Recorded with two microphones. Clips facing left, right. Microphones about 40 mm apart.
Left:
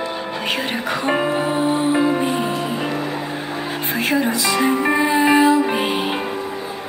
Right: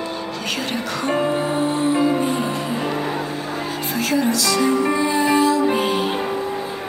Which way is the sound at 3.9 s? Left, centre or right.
Left.